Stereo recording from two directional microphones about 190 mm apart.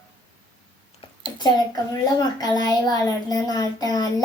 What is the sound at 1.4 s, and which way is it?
A child's voice, 20° left (ahead or behind).